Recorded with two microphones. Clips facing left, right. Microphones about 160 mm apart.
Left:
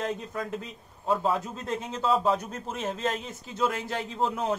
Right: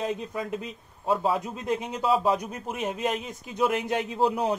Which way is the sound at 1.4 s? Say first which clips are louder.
Right 4 dB; 15° right (ahead or behind).